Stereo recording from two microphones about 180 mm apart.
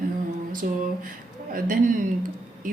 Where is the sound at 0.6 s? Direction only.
50° right (ahead or behind).